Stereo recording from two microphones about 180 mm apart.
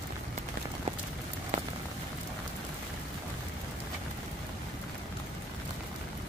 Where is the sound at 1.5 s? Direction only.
40° right (ahead or behind).